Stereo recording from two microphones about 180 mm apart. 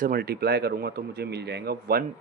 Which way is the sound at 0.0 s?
55° right (ahead or behind).